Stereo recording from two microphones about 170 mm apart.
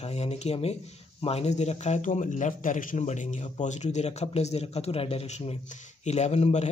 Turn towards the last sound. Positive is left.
turn(degrees=40)  # may be behind; listen again after turning